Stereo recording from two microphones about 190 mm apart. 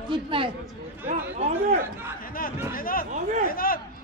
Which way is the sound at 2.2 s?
50° left (ahead or behind).